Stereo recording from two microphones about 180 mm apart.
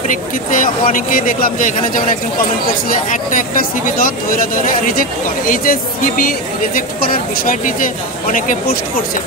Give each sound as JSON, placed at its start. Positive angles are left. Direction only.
{"t": 0.1, "sound": "speech", "side_deg": 50}
{"t": 5.5, "sound": "speech", "side_deg": 50}